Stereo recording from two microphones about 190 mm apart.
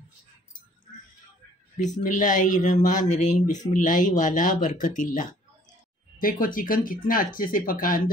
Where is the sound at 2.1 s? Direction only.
40° left (ahead or behind).